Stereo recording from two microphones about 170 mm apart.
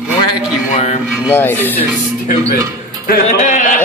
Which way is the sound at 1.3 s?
10° left (ahead or behind).